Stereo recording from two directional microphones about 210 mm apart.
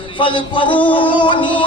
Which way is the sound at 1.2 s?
20° left (ahead or behind).